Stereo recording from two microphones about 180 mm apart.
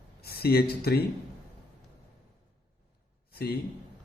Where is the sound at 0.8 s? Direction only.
60° left (ahead or behind).